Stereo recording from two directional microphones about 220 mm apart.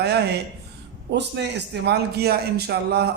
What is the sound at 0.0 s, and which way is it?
A man's voice, 50° right (ahead or behind).